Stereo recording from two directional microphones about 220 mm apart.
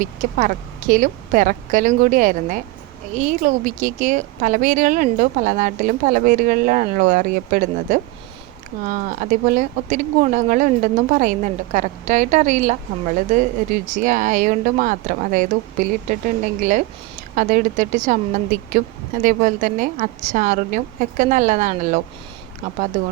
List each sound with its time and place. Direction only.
0.0 s a woman's voice: 35° right (ahead or behind)
19.2 s a woman's voice: 35° right (ahead or behind)